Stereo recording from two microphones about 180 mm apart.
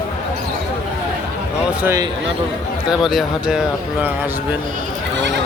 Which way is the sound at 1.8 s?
15° right (ahead or behind).